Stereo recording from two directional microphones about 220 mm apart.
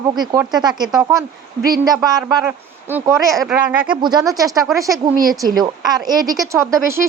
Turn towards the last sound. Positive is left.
turn(degrees=-10)  # may be behind; listen again after turning